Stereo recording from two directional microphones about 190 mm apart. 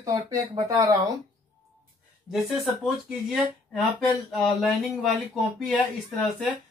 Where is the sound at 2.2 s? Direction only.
Centre (ahead or behind).